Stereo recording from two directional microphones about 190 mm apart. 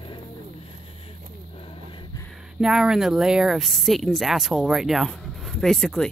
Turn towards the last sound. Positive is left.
turn(degrees=5)  # may be behind; listen again after turning